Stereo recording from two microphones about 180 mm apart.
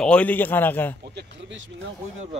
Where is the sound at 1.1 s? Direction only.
80° right.